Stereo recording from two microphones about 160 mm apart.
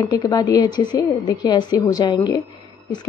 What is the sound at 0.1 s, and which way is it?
A woman's voice, 20° left (ahead or behind).